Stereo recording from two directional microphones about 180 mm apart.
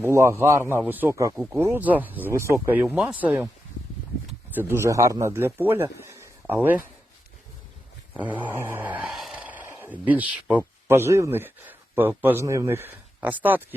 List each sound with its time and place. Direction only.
0.0 s speech: 15° right (ahead or behind)
8.1 s a man's voice: 10° right (ahead or behind)